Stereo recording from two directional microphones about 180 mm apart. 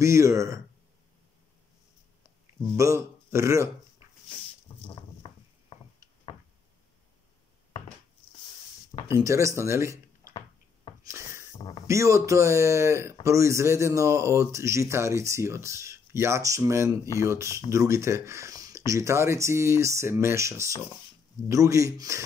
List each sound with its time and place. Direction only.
0.0 s speech: 15° right (ahead or behind)
2.7 s speech: 15° right (ahead or behind)
4.8 s a sound: 30° left (ahead or behind)
9.0 s speech: 15° right (ahead or behind)
11.1 s a sound: 15° right (ahead or behind)
11.9 s speech: 15° right (ahead or behind)